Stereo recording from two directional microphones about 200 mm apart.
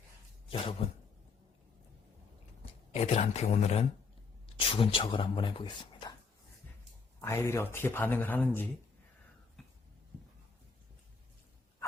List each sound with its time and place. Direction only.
0.5 s speech: 30° left (ahead or behind)
2.9 s speech: 30° left (ahead or behind)
7.2 s speech: 15° left (ahead or behind)
9.6 s a sound: centre (ahead or behind)